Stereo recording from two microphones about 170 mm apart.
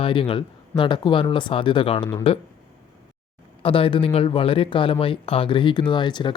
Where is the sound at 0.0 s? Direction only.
30° left (ahead or behind).